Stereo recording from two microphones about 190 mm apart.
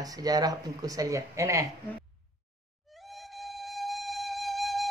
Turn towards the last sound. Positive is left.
turn(degrees=0)  # may be behind; listen again after turning